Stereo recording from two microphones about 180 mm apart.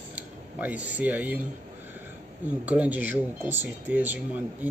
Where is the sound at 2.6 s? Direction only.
10° right (ahead or behind).